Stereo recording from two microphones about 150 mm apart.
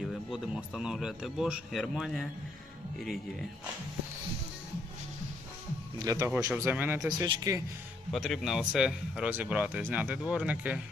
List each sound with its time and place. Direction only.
0.0 s speech: centre (ahead or behind)
6.1 s speech: 25° right (ahead or behind)
6.7 s speech: 10° right (ahead or behind)
7.2 s speech: 20° right (ahead or behind)
8.1 s speech: centre (ahead or behind)